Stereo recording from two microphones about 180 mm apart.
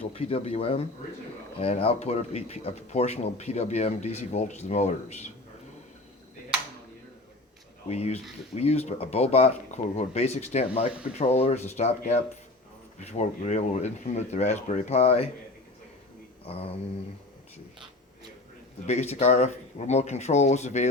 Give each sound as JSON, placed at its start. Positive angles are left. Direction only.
{"t": 0.0, "sound": "speech", "side_deg": 30}
{"t": 7.9, "sound": "speech", "side_deg": 35}
{"t": 16.5, "sound": "speech", "side_deg": 30}
{"t": 18.9, "sound": "speech", "side_deg": 40}